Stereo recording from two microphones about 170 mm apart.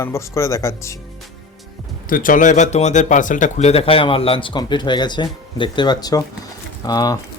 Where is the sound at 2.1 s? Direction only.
55° left (ahead or behind); by 7.1 s 20° left (ahead or behind).